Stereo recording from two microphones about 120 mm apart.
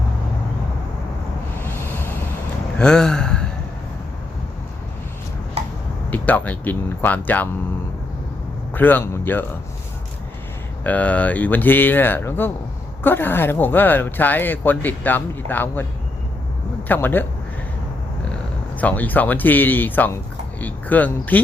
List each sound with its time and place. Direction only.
1.5 s vehicle: 15° left (ahead or behind)
2.7 s a sound: 5° left (ahead or behind)
6.1 s speech: 10° left (ahead or behind)
8.7 s speech: 15° left (ahead or behind)
10.8 s speech: 10° left (ahead or behind)
16.9 s speech: 15° left (ahead or behind)
18.8 s speech: 15° left (ahead or behind)